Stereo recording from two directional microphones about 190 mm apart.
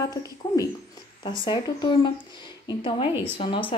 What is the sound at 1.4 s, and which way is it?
Speech, 25° left (ahead or behind).